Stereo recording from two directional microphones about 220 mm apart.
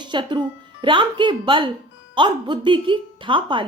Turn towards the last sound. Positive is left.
turn(degrees=-20)  # may be behind; listen again after turning